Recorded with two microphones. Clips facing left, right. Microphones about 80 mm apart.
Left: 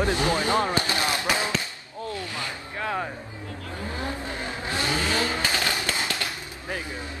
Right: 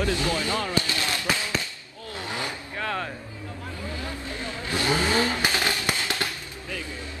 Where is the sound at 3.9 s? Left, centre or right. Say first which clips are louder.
Left 5 dB; left.